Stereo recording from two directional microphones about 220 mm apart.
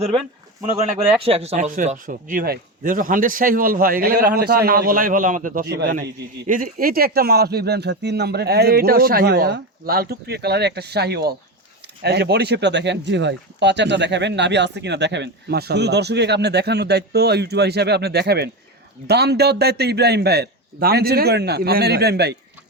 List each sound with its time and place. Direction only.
1.2 s speech: 25° right (ahead or behind); by 22.4 s 50° right (ahead or behind)